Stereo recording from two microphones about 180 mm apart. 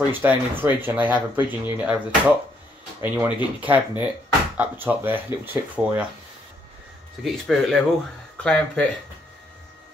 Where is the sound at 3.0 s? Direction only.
10° right (ahead or behind).